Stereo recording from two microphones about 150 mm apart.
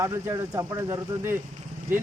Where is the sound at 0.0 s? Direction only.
20° right (ahead or behind).